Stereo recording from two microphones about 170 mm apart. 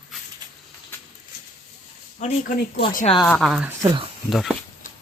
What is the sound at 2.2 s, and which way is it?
Speech, 45° left (ahead or behind).